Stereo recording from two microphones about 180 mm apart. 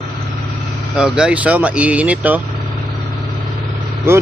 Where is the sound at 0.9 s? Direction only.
5° right (ahead or behind).